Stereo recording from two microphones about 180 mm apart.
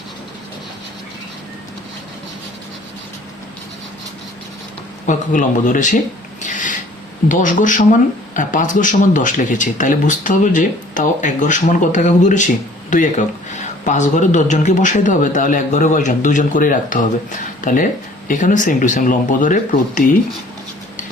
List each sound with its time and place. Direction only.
5.0 s speech: 45° left (ahead or behind)
6.4 s filing: 45° left (ahead or behind)
7.3 s speech: 45° left (ahead or behind)